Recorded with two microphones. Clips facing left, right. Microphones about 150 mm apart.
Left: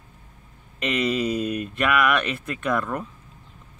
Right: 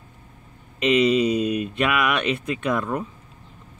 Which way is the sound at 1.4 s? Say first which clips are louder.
Right 3 dB; 50° left (ahead or behind).